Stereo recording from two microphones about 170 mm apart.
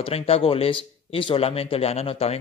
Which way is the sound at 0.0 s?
35° left (ahead or behind).